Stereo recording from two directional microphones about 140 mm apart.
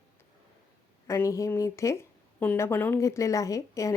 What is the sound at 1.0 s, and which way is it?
A woman's voice, 20° left (ahead or behind).